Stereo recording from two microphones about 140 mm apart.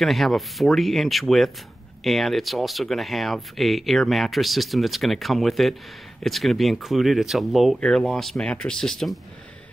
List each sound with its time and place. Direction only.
0.0 s speech: centre (ahead or behind)